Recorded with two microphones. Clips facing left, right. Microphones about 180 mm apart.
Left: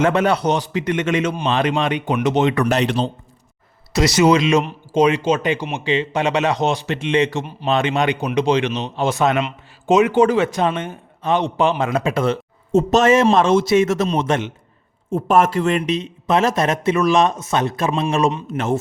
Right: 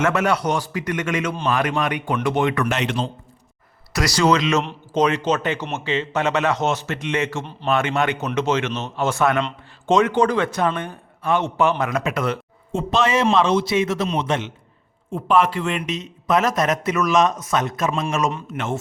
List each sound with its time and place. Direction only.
0.0 s speech: 30° left (ahead or behind)
2.6 s a man's voice: 35° left (ahead or behind)
3.9 s speech: 20° left (ahead or behind)
4.3 s speech: 10° left (ahead or behind)
9.4 s a sound: 5° left (ahead or behind)
10.0 s speech: 10° left (ahead or behind)
10.4 s speech: 20° left (ahead or behind)
12.7 s a man's voice: 45° left (ahead or behind)
15.8 s a man's voice: 30° left (ahead or behind)